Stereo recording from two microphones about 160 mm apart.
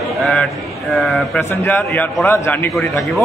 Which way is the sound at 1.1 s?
Centre (ahead or behind).